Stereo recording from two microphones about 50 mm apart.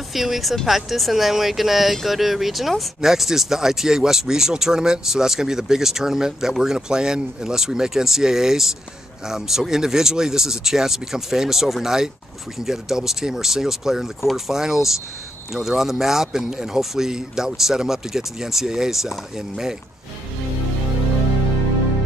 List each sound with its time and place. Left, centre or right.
0.1 s speech: centre